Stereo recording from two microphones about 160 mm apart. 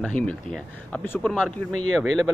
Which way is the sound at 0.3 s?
10° left (ahead or behind).